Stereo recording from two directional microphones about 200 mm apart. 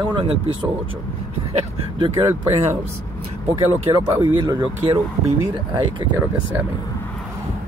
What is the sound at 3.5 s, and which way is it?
Speech, 15° right (ahead or behind).